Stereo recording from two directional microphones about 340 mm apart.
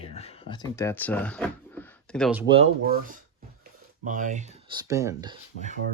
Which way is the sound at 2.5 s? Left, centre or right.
Right.